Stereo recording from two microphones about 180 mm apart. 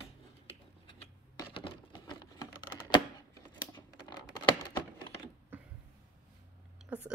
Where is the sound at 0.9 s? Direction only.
25° left (ahead or behind).